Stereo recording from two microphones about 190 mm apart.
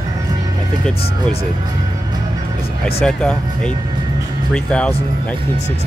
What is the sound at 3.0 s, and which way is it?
Speech, 5° left (ahead or behind).